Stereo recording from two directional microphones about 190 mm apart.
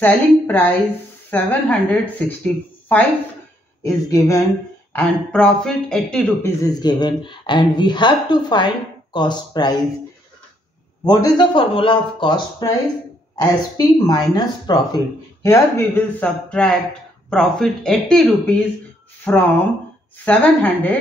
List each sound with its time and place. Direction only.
0.0 s a woman's voice: 10° left (ahead or behind)
4.9 s speech: 5° left (ahead or behind)
6.6 s speech: 20° left (ahead or behind)
11.1 s a woman's voice: 20° left (ahead or behind)